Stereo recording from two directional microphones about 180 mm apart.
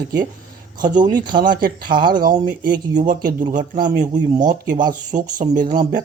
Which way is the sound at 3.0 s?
45° right (ahead or behind).